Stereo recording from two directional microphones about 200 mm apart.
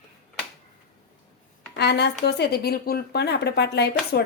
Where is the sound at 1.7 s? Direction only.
55° left (ahead or behind).